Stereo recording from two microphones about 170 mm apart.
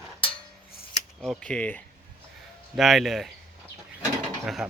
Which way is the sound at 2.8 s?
Centre (ahead or behind).